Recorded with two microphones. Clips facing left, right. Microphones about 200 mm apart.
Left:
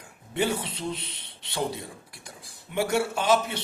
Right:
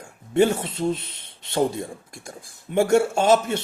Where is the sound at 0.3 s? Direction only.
50° right (ahead or behind).